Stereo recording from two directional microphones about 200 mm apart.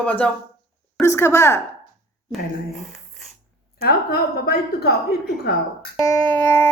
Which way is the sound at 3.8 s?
50° left (ahead or behind).